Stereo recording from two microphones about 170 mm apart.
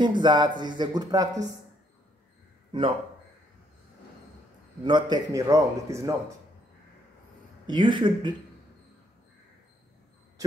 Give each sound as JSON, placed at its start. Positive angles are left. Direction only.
{"t": 0.0, "sound": "speech", "side_deg": -25}
{"t": 4.8, "sound": "speech", "side_deg": -25}
{"t": 7.6, "sound": "speech", "side_deg": -25}